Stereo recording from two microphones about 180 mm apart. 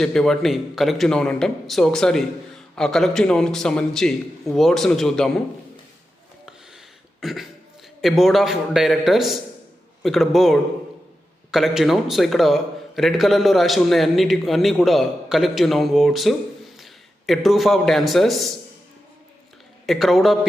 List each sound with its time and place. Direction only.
0.0 s a man's voice: 5° left (ahead or behind)
7.2 s a man's voice: centre (ahead or behind)
19.9 s a man's voice: centre (ahead or behind)